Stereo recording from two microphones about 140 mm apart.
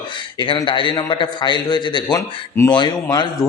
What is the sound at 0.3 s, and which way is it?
A man's voice, 35° left (ahead or behind).